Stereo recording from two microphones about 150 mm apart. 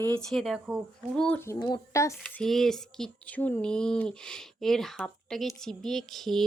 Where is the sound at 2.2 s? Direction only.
5° left (ahead or behind).